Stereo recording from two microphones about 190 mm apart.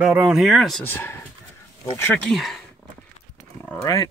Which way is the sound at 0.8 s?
10° left (ahead or behind).